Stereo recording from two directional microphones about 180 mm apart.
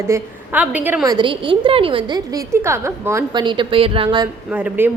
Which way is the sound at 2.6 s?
15° right (ahead or behind).